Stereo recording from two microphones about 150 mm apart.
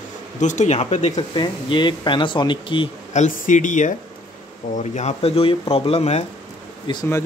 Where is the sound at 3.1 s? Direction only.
55° left (ahead or behind).